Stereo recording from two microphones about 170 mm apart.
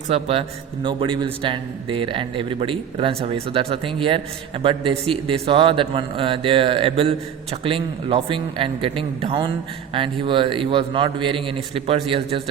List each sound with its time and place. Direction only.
0.1 s a man's voice: 35° right (ahead or behind)